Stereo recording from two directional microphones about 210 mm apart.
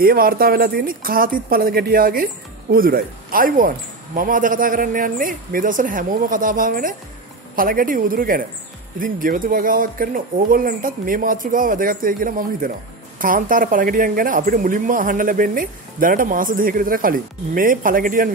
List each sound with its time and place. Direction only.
0.0 s speech: 45° right (ahead or behind)